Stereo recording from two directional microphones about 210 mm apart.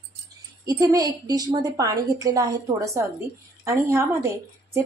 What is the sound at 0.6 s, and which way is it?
A woman's voice, 15° right (ahead or behind).